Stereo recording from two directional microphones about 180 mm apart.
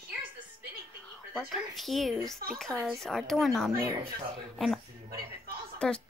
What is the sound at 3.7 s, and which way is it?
Speech, 15° right (ahead or behind).